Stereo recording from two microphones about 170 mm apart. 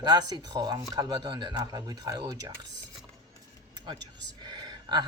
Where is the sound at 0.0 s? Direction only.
25° right (ahead or behind).